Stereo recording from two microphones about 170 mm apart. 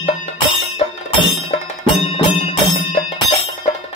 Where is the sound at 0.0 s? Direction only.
35° left (ahead or behind).